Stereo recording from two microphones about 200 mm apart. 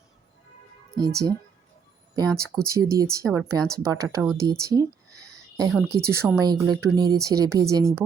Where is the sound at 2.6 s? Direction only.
15° right (ahead or behind).